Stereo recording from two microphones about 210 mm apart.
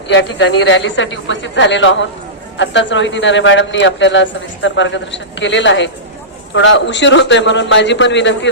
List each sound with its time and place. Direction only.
0.1 s a man's voice: 60° left (ahead or behind)